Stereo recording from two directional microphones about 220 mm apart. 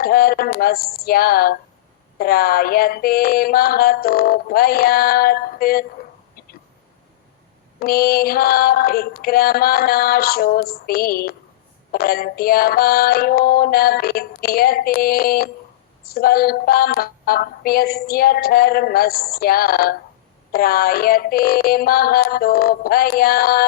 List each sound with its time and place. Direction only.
0.0 s music: 45° left (ahead or behind)
7.8 s music: 45° left (ahead or behind)